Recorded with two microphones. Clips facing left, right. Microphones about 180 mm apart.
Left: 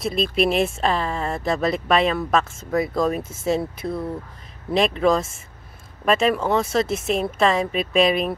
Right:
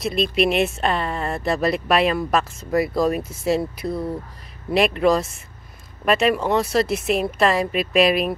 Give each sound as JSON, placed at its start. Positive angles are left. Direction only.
{"t": 0.1, "sound": "speech", "side_deg": 0}
{"t": 3.2, "sound": "speech", "side_deg": 25}
{"t": 3.4, "sound": "speech", "side_deg": -5}